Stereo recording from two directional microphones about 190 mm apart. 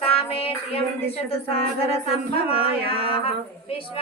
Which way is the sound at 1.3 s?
30° left (ahead or behind).